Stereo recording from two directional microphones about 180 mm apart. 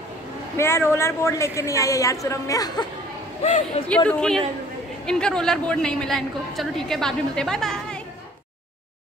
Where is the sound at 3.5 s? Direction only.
40° left (ahead or behind).